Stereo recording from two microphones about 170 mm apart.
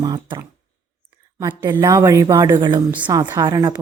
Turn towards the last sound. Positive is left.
turn(degrees=-20)  # may be behind; listen again after turning